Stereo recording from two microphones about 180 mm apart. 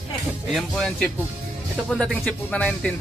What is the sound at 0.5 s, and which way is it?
Speech, centre (ahead or behind).